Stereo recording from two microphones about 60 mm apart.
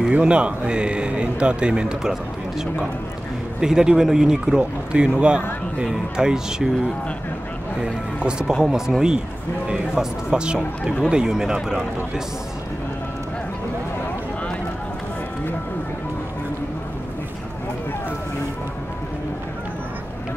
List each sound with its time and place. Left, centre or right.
0.1 s a man's voice: centre
3.6 s a man's voice: centre